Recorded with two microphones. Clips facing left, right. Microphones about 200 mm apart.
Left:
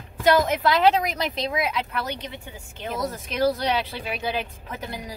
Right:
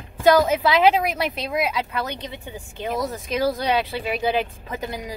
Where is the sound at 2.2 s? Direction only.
15° right (ahead or behind).